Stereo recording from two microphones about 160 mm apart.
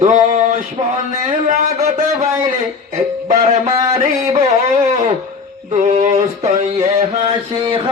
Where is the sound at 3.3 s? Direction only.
40° right (ahead or behind).